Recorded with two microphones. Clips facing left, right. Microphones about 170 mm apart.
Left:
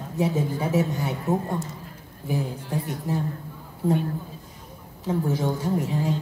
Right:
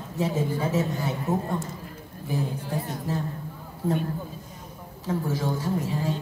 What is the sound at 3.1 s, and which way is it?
Speech, 15° left (ahead or behind).